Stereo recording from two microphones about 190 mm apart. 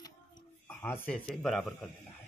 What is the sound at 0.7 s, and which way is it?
Speech, 10° left (ahead or behind).